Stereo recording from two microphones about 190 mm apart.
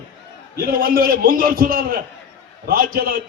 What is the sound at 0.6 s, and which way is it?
Music, 50° right (ahead or behind).